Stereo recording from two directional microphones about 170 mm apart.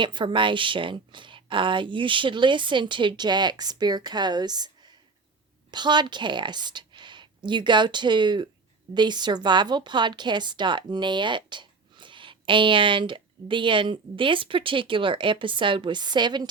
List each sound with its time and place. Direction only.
0.0 s a woman's voice: 30° right (ahead or behind)